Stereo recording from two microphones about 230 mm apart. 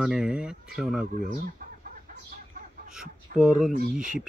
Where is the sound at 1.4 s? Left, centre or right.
Right.